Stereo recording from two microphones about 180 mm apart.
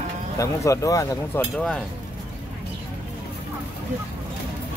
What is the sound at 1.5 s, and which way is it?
Speech, 5° left (ahead or behind).